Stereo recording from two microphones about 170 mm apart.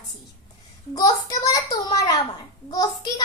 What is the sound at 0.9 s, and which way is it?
A child's voice, 20° left (ahead or behind).